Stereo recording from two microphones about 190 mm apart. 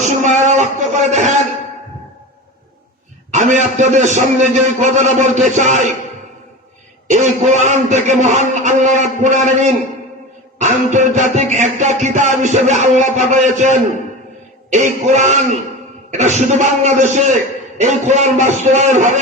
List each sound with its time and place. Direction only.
0.0 s a sound: 40° right (ahead or behind)
3.3 s a man's voice: 40° right (ahead or behind)
5.5 s music: 40° right (ahead or behind)
7.1 s music: 40° right (ahead or behind)